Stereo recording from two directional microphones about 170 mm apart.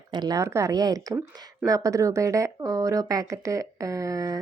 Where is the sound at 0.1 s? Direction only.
25° right (ahead or behind).